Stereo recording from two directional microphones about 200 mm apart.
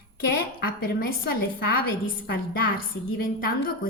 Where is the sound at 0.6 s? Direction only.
50° left (ahead or behind).